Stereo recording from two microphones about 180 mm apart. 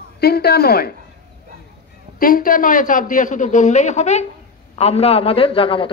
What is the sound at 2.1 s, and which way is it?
A man's voice, 50° left (ahead or behind).